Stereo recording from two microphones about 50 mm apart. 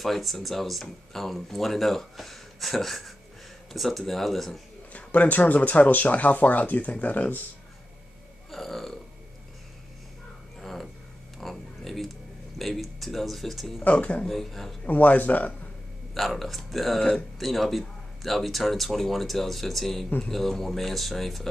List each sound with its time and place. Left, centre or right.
0.0 s speech: centre
4.9 s speech: left
8.5 s burping: centre
10.6 s a sound: centre
12.5 s speech: centre
13.8 s speech: left
14.2 s speech: centre
14.9 s speech: left
16.2 s speech: centre